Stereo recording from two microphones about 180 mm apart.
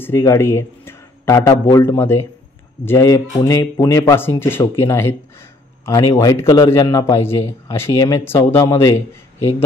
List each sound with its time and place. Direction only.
0.0 s a man's voice: 15° left (ahead or behind)